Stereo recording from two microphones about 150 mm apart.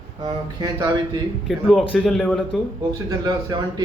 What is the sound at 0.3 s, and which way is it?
Speech, 25° right (ahead or behind).